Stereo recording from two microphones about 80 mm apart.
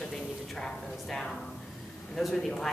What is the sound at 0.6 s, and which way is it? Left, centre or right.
Speech, centre.